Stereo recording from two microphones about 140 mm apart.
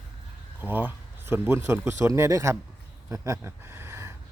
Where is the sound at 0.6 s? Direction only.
10° right (ahead or behind).